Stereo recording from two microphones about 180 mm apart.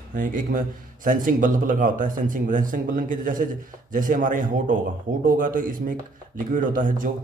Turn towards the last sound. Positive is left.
turn(degrees=-50)  # may be behind; listen again after turning